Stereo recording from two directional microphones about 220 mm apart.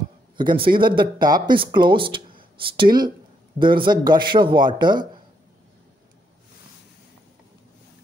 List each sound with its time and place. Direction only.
0.4 s speech: 20° right (ahead or behind)